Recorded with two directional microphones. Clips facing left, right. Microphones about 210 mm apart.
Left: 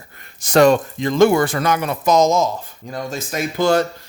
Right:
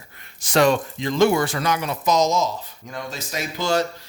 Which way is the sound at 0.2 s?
45° left (ahead or behind).